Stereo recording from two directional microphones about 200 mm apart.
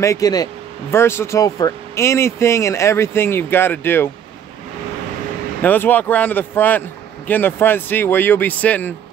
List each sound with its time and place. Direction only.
0.0 s speech: 15° left (ahead or behind)
5.6 s speech: 10° left (ahead or behind)